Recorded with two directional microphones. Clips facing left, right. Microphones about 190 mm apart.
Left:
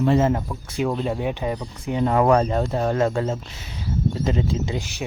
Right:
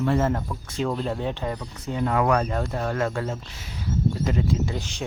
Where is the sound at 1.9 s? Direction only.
30° left (ahead or behind).